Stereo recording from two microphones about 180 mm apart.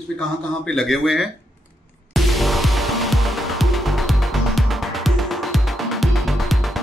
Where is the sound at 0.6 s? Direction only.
Centre (ahead or behind).